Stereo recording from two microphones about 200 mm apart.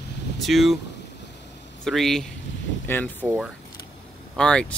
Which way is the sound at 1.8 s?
Centre (ahead or behind).